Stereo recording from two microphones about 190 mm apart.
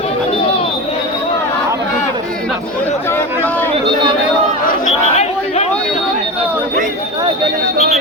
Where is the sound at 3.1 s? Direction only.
10° left (ahead or behind).